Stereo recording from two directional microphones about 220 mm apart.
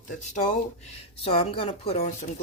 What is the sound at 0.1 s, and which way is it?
Speech, 30° left (ahead or behind).